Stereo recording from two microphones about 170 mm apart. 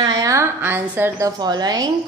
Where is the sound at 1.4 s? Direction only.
25° right (ahead or behind).